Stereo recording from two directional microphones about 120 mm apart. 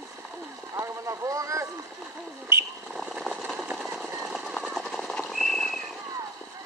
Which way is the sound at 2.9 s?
5° right (ahead or behind).